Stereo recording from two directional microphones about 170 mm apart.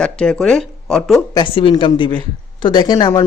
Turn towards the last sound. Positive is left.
turn(degrees=20)  # may be behind; listen again after turning